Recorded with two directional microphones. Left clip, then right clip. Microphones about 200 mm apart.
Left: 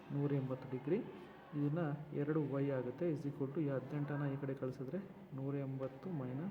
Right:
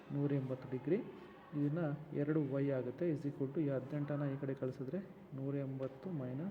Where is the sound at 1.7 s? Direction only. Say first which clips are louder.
Right 1 dB; 10° right (ahead or behind).